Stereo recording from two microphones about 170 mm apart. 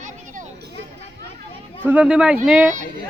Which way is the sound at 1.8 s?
10° right (ahead or behind).